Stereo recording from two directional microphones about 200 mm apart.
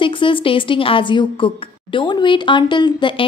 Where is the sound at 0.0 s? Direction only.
25° left (ahead or behind).